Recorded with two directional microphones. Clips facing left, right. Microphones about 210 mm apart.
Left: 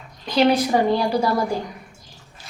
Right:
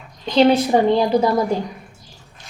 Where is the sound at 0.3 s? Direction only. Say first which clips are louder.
Right 3 dB; 25° right (ahead or behind).